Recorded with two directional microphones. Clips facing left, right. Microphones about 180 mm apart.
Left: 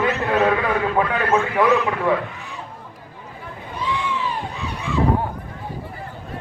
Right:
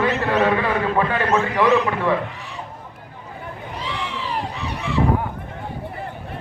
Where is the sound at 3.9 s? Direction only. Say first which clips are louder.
Left 1 dB; 80° right.